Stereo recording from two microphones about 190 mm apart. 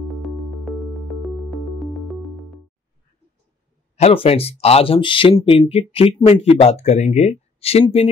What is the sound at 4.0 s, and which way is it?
Speech, 30° left (ahead or behind).